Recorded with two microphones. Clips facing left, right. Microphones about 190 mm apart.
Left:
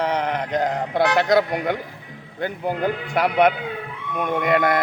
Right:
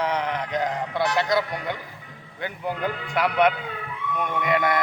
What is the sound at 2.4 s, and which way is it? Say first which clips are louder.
Speech: left 5 dB; 35° left (ahead or behind).